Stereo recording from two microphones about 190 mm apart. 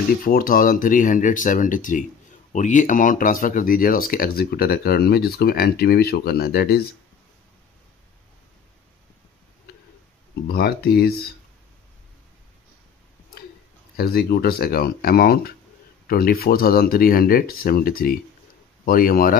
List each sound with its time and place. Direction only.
0.2 s speech: 50° left (ahead or behind)
10.5 s speech: 55° left (ahead or behind)
13.9 s speech: 55° left (ahead or behind)